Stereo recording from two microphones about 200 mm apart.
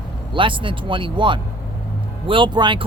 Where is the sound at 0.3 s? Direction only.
25° right (ahead or behind).